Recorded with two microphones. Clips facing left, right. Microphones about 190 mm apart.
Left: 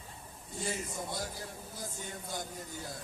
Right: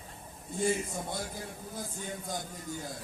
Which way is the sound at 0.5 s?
50° right (ahead or behind).